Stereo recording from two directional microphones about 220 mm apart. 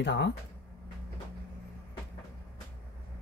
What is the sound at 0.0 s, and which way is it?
Speech, 55° left (ahead or behind).